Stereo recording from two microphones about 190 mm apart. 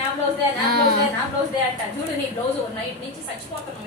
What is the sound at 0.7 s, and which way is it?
Speech, 55° right (ahead or behind).